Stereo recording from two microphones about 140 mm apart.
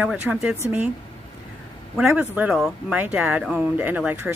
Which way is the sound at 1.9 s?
5° right (ahead or behind).